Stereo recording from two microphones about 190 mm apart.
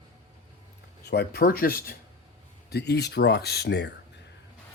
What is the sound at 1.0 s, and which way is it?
Speech, 55° left (ahead or behind).